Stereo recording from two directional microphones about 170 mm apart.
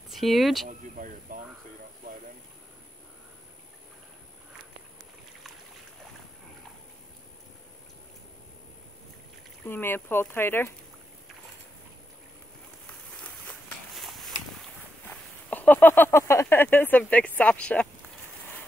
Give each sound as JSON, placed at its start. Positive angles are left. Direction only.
{"t": 0.1, "sound": "speech", "side_deg": 0}
{"t": 0.7, "sound": "speech", "side_deg": -50}
{"t": 9.7, "sound": "speech", "side_deg": 10}
{"t": 13.2, "sound": "walk", "side_deg": 5}
{"t": 15.0, "sound": "speech", "side_deg": 10}